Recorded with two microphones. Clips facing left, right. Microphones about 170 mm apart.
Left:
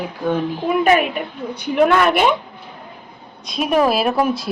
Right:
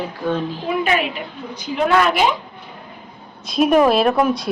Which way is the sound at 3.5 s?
Centre (ahead or behind).